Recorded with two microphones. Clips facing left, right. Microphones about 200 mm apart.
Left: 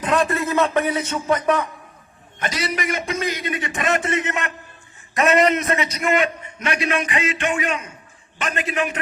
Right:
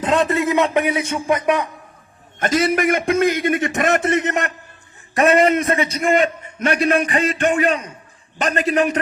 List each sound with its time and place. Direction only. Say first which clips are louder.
0.0 s a man's voice: right 3 dB; 25° right (ahead or behind)
2.4 s a man's voice: right 8 dB; 50° right (ahead or behind); by 6.2 s 30° right (ahead or behind)
6.2 s a sound: right 5 dB; 50° right (ahead or behind)
6.8 s a man's voice: right 5 dB; 35° right (ahead or behind)